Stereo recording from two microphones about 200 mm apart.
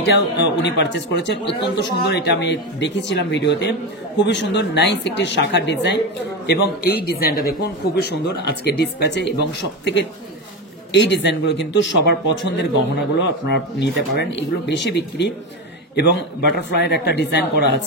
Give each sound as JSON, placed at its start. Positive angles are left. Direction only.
{"t": 0.0, "sound": "a man's voice", "side_deg": 60}
{"t": 16.5, "sound": "speech", "side_deg": 55}